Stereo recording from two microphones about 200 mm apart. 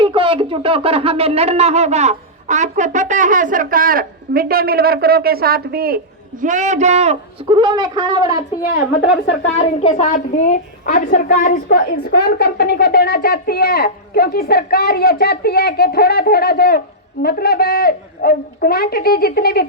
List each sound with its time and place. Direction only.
0.0 s speech: 25° right (ahead or behind); by 6.0 s 50° right (ahead or behind)
6.4 s speech: 40° right (ahead or behind); by 8.4 s 20° right (ahead or behind)
9.6 s a woman's voice: 35° left (ahead or behind); by 19.6 s 50° left (ahead or behind)